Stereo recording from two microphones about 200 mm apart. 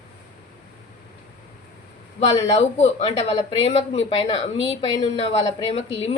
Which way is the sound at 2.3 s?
30° left (ahead or behind).